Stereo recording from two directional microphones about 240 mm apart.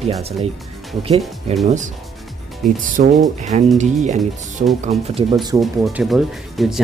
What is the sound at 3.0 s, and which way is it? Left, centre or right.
Speech, right.